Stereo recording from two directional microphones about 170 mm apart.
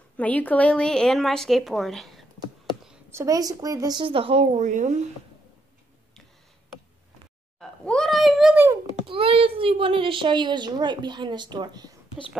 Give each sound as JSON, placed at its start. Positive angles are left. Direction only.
{"t": 0.2, "sound": "a woman's voice", "side_deg": 10}
{"t": 2.9, "sound": "a child's voice", "side_deg": -15}
{"t": 7.8, "sound": "a sound", "side_deg": 5}
{"t": 8.8, "sound": "a child's voice", "side_deg": -30}